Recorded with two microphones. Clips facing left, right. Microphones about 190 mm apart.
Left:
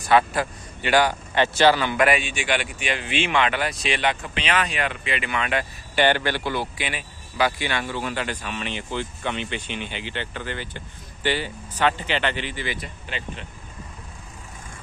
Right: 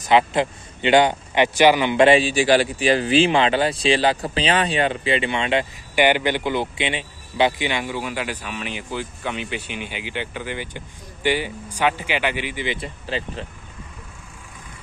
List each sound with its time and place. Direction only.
0.0 s a man's voice: 20° right (ahead or behind)
5.9 s a man's voice: 15° right (ahead or behind)
12.7 s speech: 30° right (ahead or behind)